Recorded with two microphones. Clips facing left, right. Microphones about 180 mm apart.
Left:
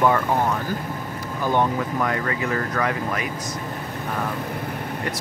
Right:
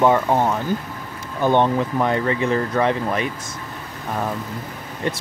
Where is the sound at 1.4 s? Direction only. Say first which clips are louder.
Right 4 dB; 25° right (ahead or behind).